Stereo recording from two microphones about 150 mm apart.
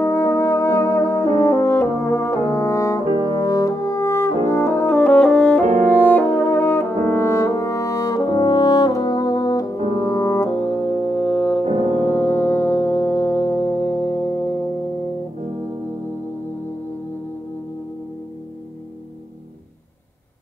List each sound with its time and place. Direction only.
0.0 s brass instrument: 15° left (ahead or behind)
4.5 s french horn: 15° left (ahead or behind)
9.9 s brass instrument: 20° left (ahead or behind)
11.6 s music: 45° right (ahead or behind)
12.1 s music: 15° left (ahead or behind)